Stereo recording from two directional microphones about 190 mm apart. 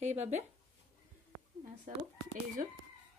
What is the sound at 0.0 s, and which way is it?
Speech, 35° right (ahead or behind).